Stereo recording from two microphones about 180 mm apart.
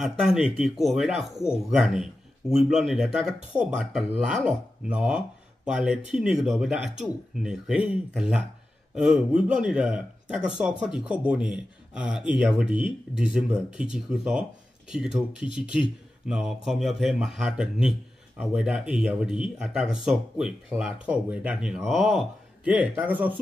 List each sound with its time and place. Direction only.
0.0 s speech: 5° right (ahead or behind)